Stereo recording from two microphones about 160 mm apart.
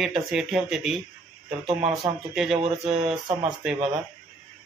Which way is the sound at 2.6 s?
40° right (ahead or behind).